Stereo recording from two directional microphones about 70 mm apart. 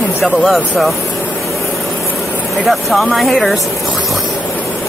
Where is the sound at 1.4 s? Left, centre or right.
Centre.